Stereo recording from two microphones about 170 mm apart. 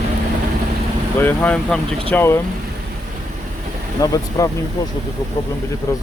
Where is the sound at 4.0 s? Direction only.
20° left (ahead or behind).